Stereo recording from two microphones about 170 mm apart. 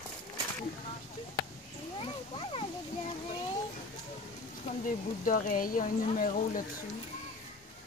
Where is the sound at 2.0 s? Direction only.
30° left (ahead or behind).